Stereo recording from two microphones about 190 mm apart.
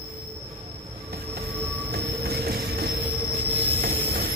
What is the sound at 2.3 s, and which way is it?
Train, 55° right (ahead or behind).